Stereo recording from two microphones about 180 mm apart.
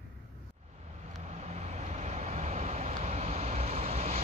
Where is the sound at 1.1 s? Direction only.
35° right (ahead or behind).